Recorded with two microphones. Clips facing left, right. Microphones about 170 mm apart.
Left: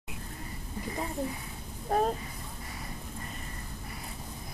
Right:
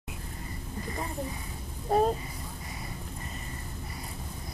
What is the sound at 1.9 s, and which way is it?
Speech, 5° right (ahead or behind).